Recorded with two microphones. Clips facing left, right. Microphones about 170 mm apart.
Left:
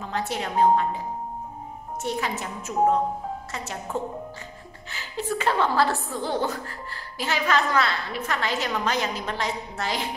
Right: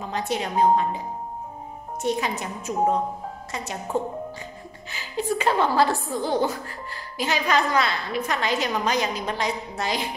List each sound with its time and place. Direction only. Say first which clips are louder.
0.0 s a woman's voice: right 2 dB; 15° right (ahead or behind)
2.0 s a woman's voice: right 3 dB; 15° right (ahead or behind)